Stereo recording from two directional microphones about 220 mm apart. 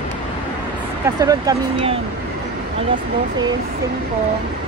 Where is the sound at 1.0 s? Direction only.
15° right (ahead or behind).